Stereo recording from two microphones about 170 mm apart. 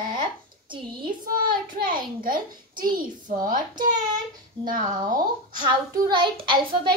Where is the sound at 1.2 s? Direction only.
55° right (ahead or behind).